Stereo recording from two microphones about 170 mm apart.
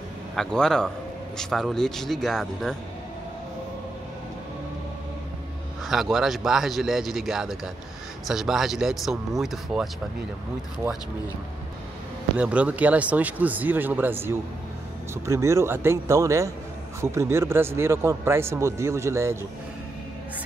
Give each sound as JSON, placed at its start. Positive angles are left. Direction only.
{"t": 0.4, "sound": "speech", "side_deg": 5}
{"t": 5.9, "sound": "speech", "side_deg": 0}
{"t": 12.4, "sound": "a man's voice", "side_deg": -5}